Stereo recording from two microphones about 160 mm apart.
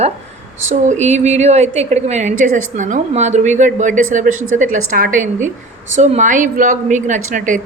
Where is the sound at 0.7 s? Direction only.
45° right (ahead or behind).